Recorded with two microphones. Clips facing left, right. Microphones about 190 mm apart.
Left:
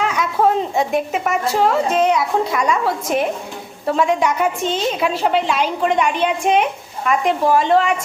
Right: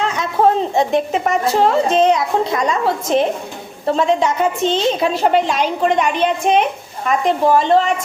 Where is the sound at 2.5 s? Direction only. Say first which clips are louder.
Right 1 dB; 30° right (ahead or behind).